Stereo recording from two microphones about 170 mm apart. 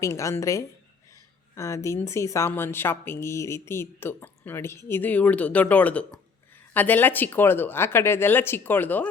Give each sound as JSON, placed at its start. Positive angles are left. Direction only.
{"t": 0.0, "sound": "a woman's voice", "side_deg": 20}